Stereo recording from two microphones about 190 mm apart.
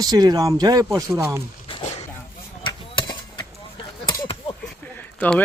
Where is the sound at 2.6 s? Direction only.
25° left (ahead or behind).